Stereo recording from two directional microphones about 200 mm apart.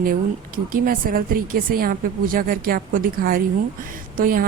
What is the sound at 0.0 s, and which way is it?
A woman's voice, 45° right (ahead or behind).